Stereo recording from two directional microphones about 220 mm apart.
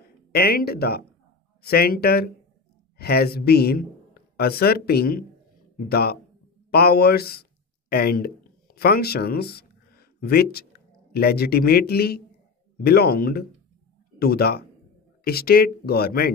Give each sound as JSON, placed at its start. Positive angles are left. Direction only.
{"t": 0.3, "sound": "speech", "side_deg": 45}